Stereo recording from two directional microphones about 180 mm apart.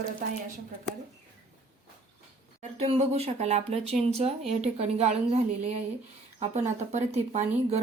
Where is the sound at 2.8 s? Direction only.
35° right (ahead or behind).